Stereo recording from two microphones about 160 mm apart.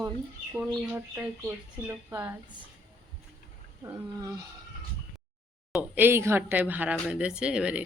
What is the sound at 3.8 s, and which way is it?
Speech, 20° right (ahead or behind).